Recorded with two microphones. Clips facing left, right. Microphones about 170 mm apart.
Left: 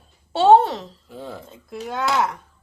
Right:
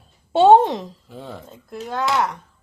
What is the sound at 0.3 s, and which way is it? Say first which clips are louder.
Speech: right 2 dB; 15° right (ahead or behind).